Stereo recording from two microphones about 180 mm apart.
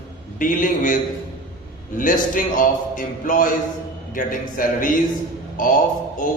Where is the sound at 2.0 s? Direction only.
50° left (ahead or behind).